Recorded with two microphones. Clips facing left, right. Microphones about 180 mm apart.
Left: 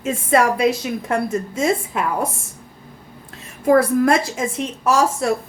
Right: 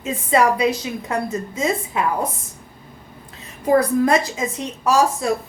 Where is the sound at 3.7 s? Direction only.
75° left (ahead or behind).